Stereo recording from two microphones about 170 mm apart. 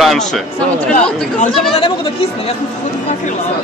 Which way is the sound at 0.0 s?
Centre (ahead or behind).